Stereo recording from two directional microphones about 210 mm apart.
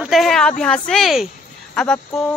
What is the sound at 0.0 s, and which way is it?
Speech, centre (ahead or behind).